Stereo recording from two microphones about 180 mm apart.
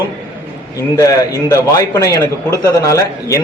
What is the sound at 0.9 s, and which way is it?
A man's voice, 20° left (ahead or behind).